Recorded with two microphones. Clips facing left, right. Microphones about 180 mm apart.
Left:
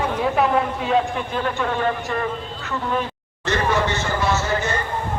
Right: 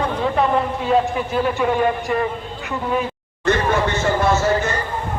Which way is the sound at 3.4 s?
55° right (ahead or behind).